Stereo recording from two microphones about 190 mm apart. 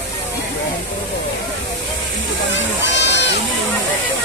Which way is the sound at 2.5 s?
75° left (ahead or behind).